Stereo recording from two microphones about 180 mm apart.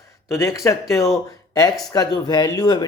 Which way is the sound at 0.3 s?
15° left (ahead or behind).